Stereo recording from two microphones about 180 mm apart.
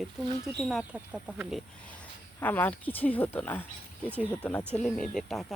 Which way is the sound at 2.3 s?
10° left (ahead or behind).